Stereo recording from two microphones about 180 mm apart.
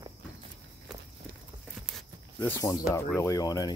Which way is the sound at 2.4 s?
15° left (ahead or behind).